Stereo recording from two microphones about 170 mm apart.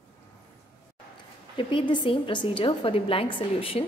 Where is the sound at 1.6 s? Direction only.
30° left (ahead or behind).